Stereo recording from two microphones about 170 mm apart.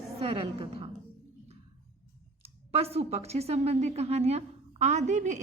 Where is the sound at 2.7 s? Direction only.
35° right (ahead or behind).